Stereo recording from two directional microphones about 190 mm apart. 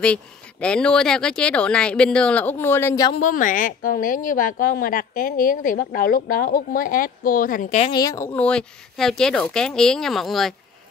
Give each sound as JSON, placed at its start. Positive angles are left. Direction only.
{"t": 0.0, "sound": "speech", "side_deg": 5}
{"t": 3.2, "sound": "a woman's voice", "side_deg": 45}
{"t": 7.9, "sound": "speech", "side_deg": 20}